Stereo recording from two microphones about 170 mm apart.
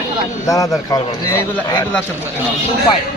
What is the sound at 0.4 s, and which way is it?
A man's voice, 20° left (ahead or behind).